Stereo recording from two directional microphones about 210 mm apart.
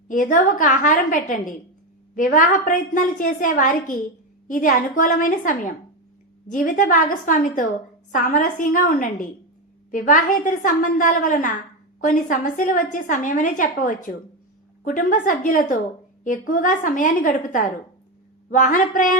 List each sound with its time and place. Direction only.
0.1 s a woman's voice: 40° left (ahead or behind)